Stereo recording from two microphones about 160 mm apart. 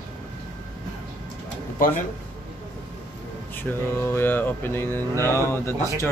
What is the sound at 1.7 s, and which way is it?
Speech, 60° left (ahead or behind).